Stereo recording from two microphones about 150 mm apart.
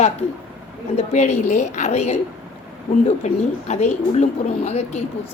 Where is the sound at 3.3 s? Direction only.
50° left (ahead or behind).